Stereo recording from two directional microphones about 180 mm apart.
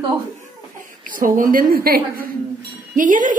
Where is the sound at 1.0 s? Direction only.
50° right (ahead or behind).